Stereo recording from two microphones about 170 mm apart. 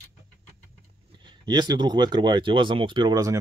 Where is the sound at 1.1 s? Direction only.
25° right (ahead or behind).